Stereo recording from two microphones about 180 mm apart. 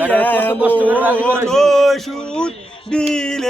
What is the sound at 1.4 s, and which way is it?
Music, centre (ahead or behind).